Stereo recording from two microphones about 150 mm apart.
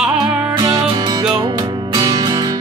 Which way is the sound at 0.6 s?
30° right (ahead or behind).